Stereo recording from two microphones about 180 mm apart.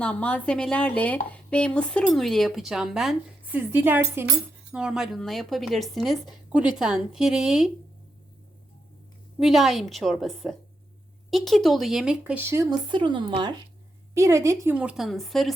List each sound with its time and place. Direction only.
0.0 s speech: 5° left (ahead or behind)
9.4 s speech: centre (ahead or behind)
12.9 s speech: 25° right (ahead or behind)
14.1 s a woman's voice: 15° right (ahead or behind)
14.8 s speech: 5° right (ahead or behind)